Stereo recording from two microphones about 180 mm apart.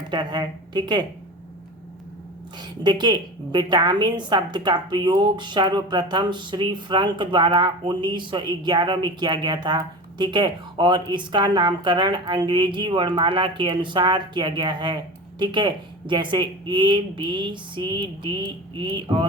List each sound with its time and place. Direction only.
0.1 s a woman's voice: 25° right (ahead or behind)
2.6 s a woman's voice: 25° right (ahead or behind)